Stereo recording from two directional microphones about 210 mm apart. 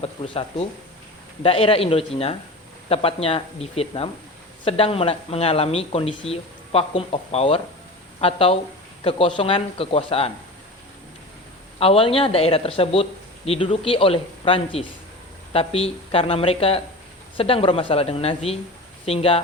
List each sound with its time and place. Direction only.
0.0 s speech: 25° left (ahead or behind)
11.8 s speech: 25° left (ahead or behind)